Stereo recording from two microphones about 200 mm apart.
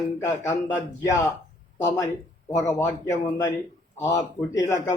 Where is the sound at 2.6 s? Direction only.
15° left (ahead or behind).